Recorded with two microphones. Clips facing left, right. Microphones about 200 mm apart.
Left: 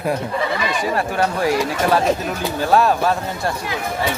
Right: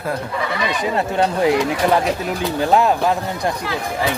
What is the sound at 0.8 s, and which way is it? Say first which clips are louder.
Speech: right 3 dB; 20° right (ahead or behind).